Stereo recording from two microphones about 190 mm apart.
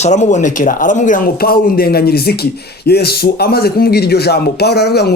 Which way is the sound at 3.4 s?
55° left (ahead or behind).